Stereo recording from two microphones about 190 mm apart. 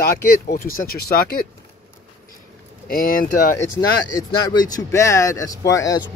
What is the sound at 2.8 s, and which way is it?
Speech, 50° left (ahead or behind).